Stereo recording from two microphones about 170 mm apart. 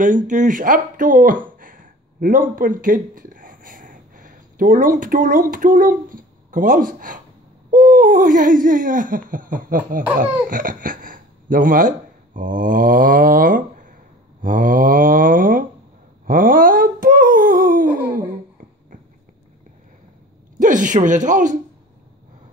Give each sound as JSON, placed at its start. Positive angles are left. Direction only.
{"t": 0.0, "sound": "speech", "side_deg": -50}
{"t": 7.7, "sound": "hoot", "side_deg": -50}
{"t": 10.5, "sound": "speech", "side_deg": -55}
{"t": 12.4, "sound": "hoot", "side_deg": -50}
{"t": 14.4, "sound": "mantra", "side_deg": -55}
{"t": 16.3, "sound": "a sound", "side_deg": -55}
{"t": 20.5, "sound": "speech", "side_deg": -50}